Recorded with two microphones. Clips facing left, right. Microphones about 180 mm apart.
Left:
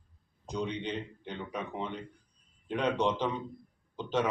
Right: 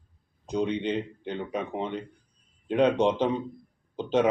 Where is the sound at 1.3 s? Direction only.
25° right (ahead or behind).